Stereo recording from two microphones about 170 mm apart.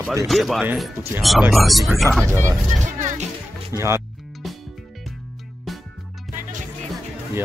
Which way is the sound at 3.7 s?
15° right (ahead or behind).